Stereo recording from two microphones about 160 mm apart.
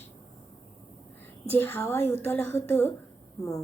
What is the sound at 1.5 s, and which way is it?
A woman's voice, 15° left (ahead or behind).